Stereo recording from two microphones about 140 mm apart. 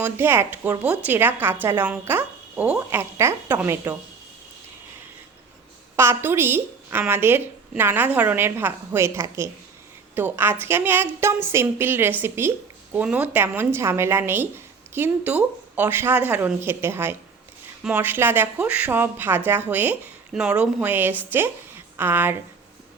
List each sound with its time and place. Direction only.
0.0 s a woman's voice: 15° right (ahead or behind)
6.0 s a woman's voice: 15° right (ahead or behind)